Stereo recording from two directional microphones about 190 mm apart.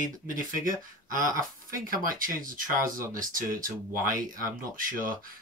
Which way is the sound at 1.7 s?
45° right (ahead or behind).